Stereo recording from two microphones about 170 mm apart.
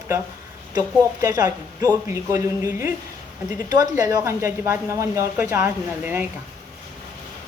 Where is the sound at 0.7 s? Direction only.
20° right (ahead or behind).